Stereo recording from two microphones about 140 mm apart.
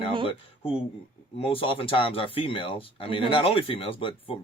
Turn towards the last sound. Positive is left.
turn(degrees=40)  # may be behind; listen again after turning